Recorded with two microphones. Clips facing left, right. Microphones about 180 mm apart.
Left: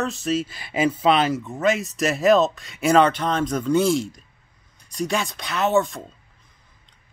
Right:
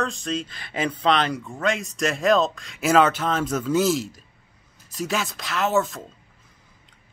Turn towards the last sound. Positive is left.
turn(degrees=0)  # may be behind; listen again after turning